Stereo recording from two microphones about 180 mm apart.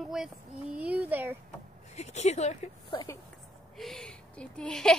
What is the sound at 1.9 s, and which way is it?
Speech, 40° left (ahead or behind).